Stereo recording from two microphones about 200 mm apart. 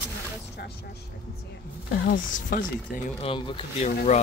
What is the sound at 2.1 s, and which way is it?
Speech, 45° left (ahead or behind).